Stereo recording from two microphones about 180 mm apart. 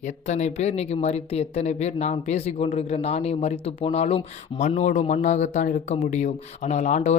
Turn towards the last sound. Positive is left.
turn(degrees=40)  # may be behind; listen again after turning